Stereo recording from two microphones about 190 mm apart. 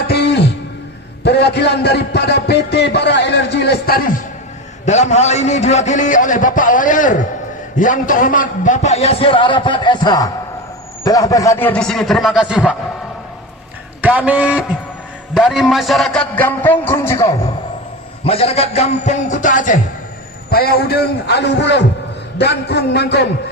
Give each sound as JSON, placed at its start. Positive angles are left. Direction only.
{"t": 0.1, "sound": "music", "side_deg": 60}
{"t": 1.2, "sound": "a man's voice", "side_deg": 60}
{"t": 4.9, "sound": "a man's voice", "side_deg": 35}
{"t": 14.0, "sound": "a man's voice", "side_deg": -5}
{"t": 18.3, "sound": "a man's voice", "side_deg": 30}
{"t": 20.5, "sound": "a man's voice", "side_deg": 55}